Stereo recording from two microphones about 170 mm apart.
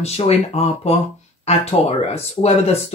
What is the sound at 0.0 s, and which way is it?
Speech, 35° left (ahead or behind).